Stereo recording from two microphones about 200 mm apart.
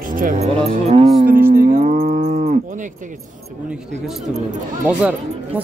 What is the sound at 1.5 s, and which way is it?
Moo, 45° right (ahead or behind).